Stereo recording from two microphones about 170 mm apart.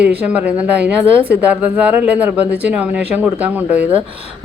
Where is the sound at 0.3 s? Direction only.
10° right (ahead or behind).